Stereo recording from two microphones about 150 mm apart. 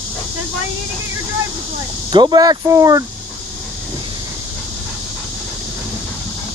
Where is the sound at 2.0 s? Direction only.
30° right (ahead or behind).